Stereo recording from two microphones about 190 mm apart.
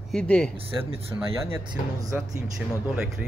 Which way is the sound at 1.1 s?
20° right (ahead or behind).